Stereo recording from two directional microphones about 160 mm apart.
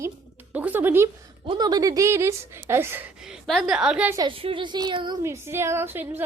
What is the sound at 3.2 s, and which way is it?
Speech, centre (ahead or behind).